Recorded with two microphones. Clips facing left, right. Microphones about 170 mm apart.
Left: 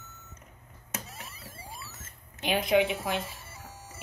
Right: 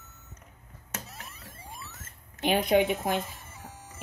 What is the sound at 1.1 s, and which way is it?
Mechanisms, 5° left (ahead or behind).